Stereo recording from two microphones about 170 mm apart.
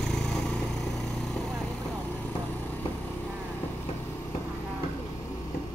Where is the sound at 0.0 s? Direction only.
5° left (ahead or behind).